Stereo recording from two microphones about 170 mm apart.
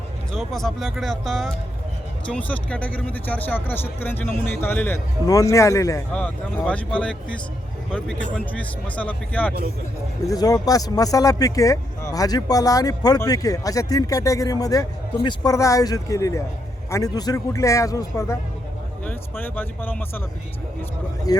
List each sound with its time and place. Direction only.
0.3 s speech: centre (ahead or behind); by 6.0 s 20° left (ahead or behind)
6.1 s speech: 10° left (ahead or behind)
9.0 s speech: 10° left (ahead or behind)
10.2 s speech: 20° left (ahead or behind)
21.3 s speech: 20° left (ahead or behind)